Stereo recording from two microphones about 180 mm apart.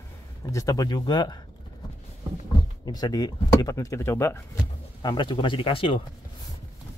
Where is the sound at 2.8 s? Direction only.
20° left (ahead or behind).